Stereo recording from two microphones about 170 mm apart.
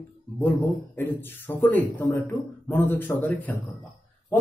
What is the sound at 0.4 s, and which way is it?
Speech, 10° left (ahead or behind).